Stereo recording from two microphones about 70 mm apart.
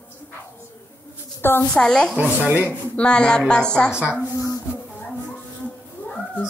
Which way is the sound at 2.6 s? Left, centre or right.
Centre.